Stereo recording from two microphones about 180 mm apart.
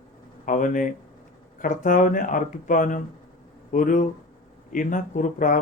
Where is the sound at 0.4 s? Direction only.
45° left (ahead or behind).